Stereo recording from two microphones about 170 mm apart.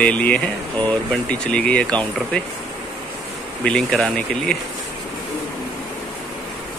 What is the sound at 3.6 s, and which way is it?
Speech, 5° left (ahead or behind).